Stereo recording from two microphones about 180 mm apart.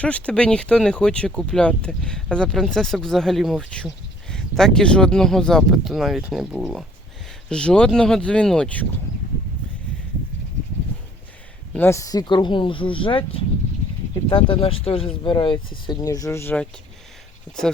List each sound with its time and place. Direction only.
0.0 s speech: 5° left (ahead or behind)
11.7 s speech: 15° left (ahead or behind)